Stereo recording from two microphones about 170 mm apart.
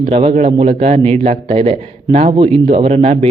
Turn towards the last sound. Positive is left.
turn(degrees=-40)  # may be behind; listen again after turning